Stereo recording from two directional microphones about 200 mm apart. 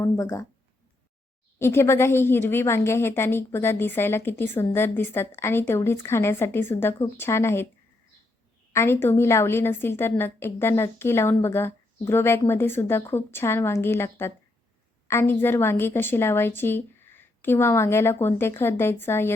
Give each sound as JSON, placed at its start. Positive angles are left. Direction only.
{"t": 0.0, "sound": "a woman's voice", "side_deg": 15}
{"t": 1.5, "sound": "a woman's voice", "side_deg": 10}
{"t": 8.7, "sound": "a woman's voice", "side_deg": 10}